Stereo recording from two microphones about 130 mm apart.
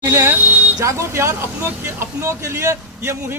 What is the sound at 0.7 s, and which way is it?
Speech, 25° right (ahead or behind).